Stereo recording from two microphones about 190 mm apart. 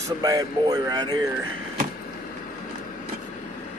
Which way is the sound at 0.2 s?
20° right (ahead or behind).